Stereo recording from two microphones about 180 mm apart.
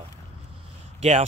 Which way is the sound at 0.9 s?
40° right (ahead or behind).